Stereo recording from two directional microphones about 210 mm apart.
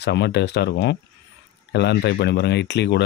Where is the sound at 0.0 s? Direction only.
55° left (ahead or behind).